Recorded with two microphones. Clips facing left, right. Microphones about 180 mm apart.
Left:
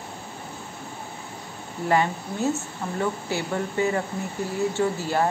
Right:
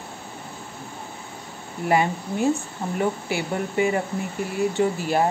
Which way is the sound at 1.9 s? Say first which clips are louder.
Right 1 dB; 15° right (ahead or behind).